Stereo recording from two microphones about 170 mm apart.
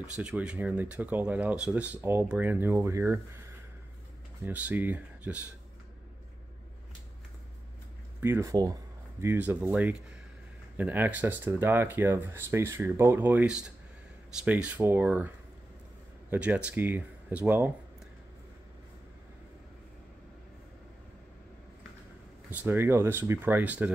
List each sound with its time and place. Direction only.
0.2 s speech: 5° right (ahead or behind)
8.2 s speech: 15° right (ahead or behind)
22.5 s speech: 10° right (ahead or behind)